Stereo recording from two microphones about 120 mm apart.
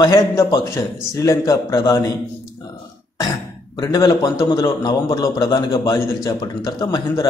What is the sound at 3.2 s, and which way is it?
A man's voice, 30° left (ahead or behind).